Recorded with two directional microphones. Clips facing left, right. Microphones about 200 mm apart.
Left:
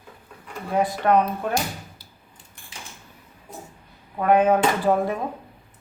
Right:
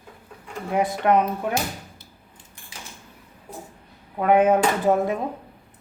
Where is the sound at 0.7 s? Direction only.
20° right (ahead or behind).